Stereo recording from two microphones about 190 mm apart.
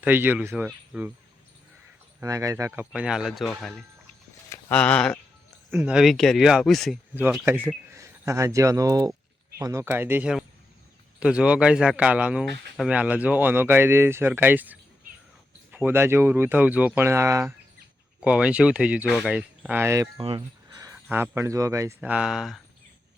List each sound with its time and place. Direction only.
0.0 s speech: 10° right (ahead or behind)
2.2 s speech: 20° right (ahead or behind); by 5.1 s 5° left (ahead or behind)
5.7 s speech: 5° right (ahead or behind)
7.7 s speech: 15° right (ahead or behind)
20.1 s speech: 25° right (ahead or behind); by 22.6 s centre (ahead or behind)